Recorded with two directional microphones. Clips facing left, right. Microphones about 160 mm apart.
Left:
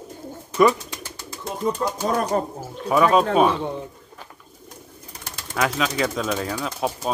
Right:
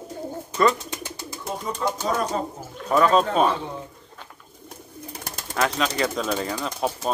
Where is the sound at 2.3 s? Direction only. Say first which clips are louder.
Left 4 dB; 60° left (ahead or behind).